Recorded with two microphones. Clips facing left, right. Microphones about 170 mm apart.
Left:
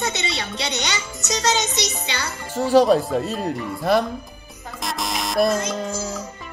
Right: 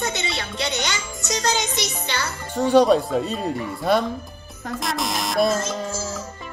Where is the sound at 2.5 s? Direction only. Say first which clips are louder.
Even; centre (ahead or behind).